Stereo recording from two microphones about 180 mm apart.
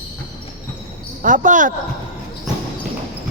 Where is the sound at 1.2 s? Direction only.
45° right (ahead or behind).